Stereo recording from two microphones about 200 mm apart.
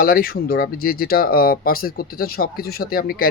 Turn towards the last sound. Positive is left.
turn(degrees=50)  # may be behind; listen again after turning